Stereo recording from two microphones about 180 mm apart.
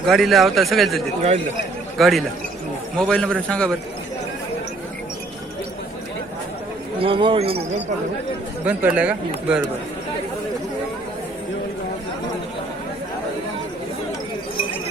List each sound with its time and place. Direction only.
0.0 s speech: centre (ahead or behind)
7.0 s speech: 30° right (ahead or behind)
8.6 s speech: 5° right (ahead or behind)